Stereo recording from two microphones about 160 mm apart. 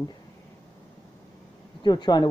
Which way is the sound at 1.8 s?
25° left (ahead or behind).